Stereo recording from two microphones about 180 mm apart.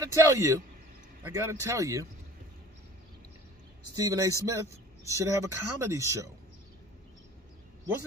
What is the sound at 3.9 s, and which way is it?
Speech, 20° right (ahead or behind).